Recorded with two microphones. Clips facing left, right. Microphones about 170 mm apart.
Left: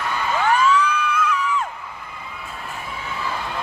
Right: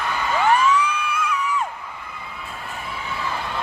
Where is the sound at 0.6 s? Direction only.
10° right (ahead or behind).